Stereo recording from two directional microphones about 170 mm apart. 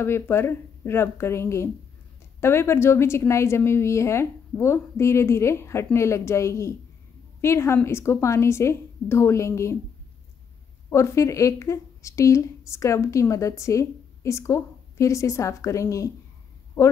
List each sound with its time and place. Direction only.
0.0 s speech: 15° left (ahead or behind)
10.9 s speech: 15° left (ahead or behind)